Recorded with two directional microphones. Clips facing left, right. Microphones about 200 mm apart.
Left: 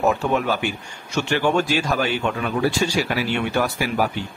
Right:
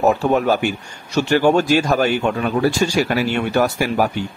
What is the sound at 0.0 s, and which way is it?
Speech, 40° right (ahead or behind).